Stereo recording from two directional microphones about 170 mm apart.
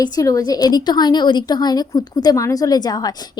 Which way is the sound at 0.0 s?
20° left (ahead or behind).